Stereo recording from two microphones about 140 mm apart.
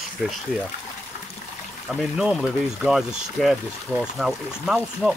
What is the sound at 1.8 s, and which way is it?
Speech, 5° right (ahead or behind).